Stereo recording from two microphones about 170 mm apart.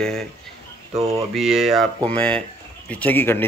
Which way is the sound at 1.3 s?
Centre (ahead or behind).